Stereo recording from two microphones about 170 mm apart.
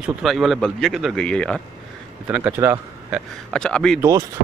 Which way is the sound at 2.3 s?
10° right (ahead or behind).